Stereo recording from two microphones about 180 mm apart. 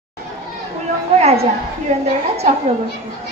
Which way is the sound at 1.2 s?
35° right (ahead or behind).